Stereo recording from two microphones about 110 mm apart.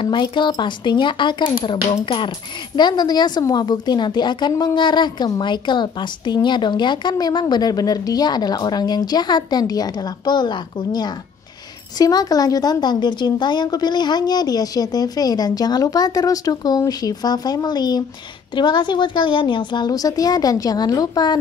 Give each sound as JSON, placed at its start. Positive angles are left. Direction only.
{"t": 0.0, "sound": "speech", "side_deg": 45}